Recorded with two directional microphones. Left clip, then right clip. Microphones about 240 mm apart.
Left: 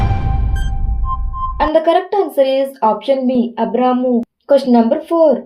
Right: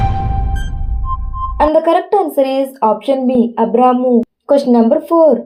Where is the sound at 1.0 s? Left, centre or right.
Centre.